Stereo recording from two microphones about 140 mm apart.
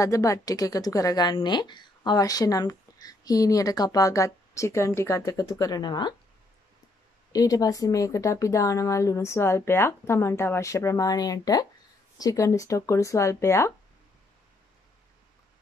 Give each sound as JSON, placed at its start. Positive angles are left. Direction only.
{"t": 0.0, "sound": "a woman's voice", "side_deg": 25}
{"t": 7.3, "sound": "a woman's voice", "side_deg": 25}